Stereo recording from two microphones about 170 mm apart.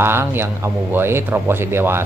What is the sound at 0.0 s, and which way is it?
Speech, 15° right (ahead or behind).